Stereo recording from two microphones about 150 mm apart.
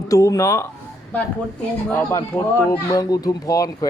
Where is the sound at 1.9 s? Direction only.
15° left (ahead or behind).